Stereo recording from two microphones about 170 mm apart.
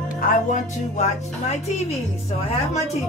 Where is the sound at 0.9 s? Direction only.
45° left (ahead or behind).